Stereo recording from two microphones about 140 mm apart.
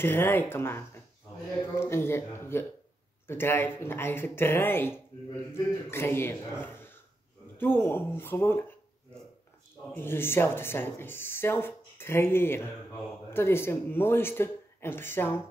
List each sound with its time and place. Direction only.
0.0 s speech: 15° left (ahead or behind)
9.9 s speech: 15° left (ahead or behind)